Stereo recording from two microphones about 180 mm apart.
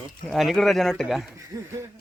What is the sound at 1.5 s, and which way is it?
Speech, 20° right (ahead or behind).